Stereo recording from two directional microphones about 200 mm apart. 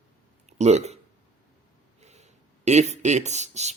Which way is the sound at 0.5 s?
35° right (ahead or behind).